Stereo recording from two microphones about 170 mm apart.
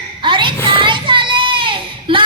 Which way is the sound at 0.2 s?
30° right (ahead or behind).